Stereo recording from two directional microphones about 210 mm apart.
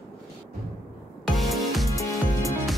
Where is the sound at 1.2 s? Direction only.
Centre (ahead or behind).